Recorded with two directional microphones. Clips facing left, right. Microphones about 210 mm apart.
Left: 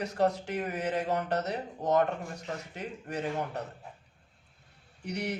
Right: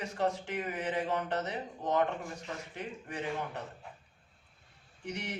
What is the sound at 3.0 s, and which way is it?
Speech, 40° left (ahead or behind).